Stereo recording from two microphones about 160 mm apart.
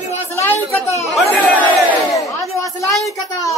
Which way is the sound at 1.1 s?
5° left (ahead or behind).